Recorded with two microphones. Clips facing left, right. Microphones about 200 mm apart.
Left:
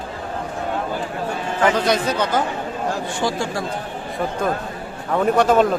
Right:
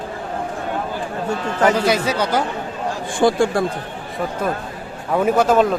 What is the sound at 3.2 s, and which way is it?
Speech, 55° right (ahead or behind).